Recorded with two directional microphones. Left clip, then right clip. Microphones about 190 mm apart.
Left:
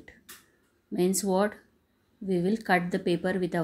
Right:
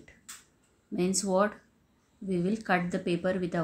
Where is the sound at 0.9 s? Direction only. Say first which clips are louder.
Left 1 dB; 20° left (ahead or behind).